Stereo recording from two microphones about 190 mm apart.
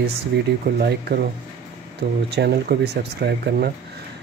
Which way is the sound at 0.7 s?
55° right (ahead or behind).